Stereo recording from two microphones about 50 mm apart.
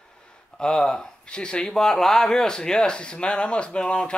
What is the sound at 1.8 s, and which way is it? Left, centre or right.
Speech, centre.